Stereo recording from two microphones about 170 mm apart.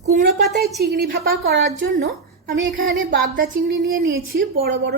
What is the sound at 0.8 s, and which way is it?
A woman's voice, 70° right (ahead or behind).